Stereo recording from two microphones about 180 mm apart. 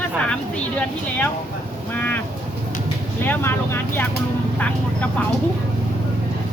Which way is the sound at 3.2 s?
10° left (ahead or behind).